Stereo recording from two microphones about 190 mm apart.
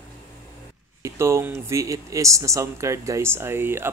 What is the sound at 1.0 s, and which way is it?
Speech, 15° right (ahead or behind).